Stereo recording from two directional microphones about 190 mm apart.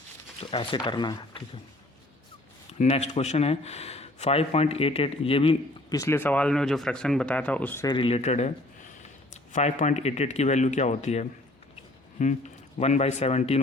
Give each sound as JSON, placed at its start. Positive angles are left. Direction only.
{"t": 0.3, "sound": "speech", "side_deg": 25}
{"t": 2.7, "sound": "speech", "side_deg": 35}
{"t": 5.9, "sound": "speech", "side_deg": 15}
{"t": 7.9, "sound": "speech", "side_deg": 25}